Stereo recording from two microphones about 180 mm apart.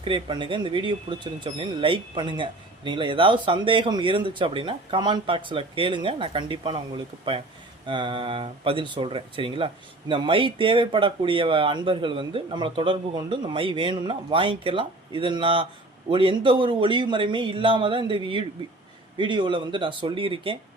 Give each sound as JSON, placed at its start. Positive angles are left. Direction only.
{"t": 0.0, "sound": "speech", "side_deg": -25}